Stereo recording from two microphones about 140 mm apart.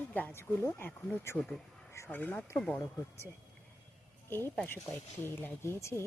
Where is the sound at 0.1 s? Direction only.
10° left (ahead or behind).